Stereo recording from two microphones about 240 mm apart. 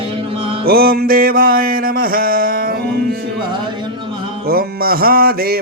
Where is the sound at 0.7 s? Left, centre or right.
Right.